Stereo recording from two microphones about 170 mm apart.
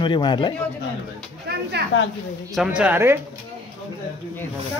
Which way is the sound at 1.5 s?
65° right (ahead or behind).